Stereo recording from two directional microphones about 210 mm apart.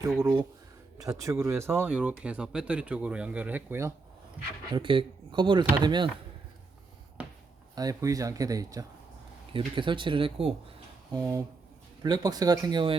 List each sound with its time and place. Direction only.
0.2 s speech: 20° right (ahead or behind)
4.7 s speech: 25° right (ahead or behind)
7.2 s a sound: 5° right (ahead or behind)
7.8 s speech: 15° right (ahead or behind)
11.1 s speech: 15° right (ahead or behind)